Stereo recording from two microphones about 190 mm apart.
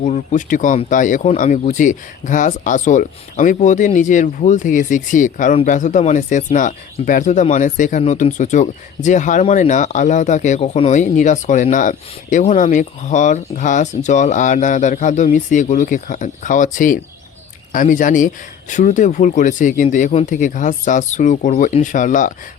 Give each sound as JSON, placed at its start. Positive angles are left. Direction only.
{"t": 0.0, "sound": "speech", "side_deg": 40}